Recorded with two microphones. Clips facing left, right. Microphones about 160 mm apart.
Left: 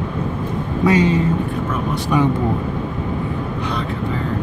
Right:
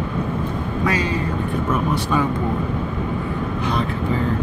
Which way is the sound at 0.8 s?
20° left (ahead or behind).